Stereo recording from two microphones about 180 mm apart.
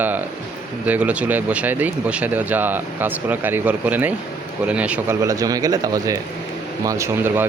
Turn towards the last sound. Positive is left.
turn(degrees=-15)  # may be behind; listen again after turning